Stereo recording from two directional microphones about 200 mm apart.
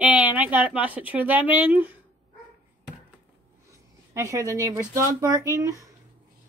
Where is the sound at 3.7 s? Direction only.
15° right (ahead or behind).